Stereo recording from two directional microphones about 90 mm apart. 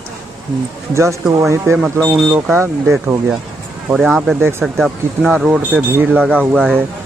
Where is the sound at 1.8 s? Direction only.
Centre (ahead or behind).